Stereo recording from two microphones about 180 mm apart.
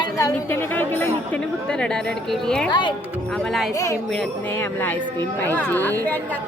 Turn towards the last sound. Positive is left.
turn(degrees=10)  # may be behind; listen again after turning